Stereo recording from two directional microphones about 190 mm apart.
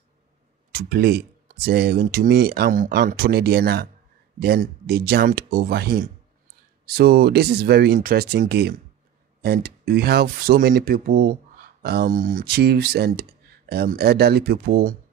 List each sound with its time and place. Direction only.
0.7 s speech: 55° right (ahead or behind)